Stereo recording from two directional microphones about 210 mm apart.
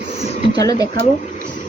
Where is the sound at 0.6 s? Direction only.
15° left (ahead or behind).